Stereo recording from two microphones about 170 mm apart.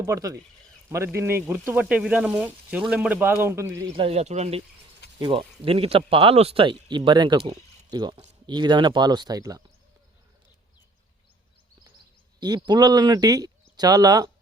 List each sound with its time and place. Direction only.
0.0 s speech: 20° right (ahead or behind)
3.9 s speech: 35° right (ahead or behind)
12.4 s speech: 25° right (ahead or behind)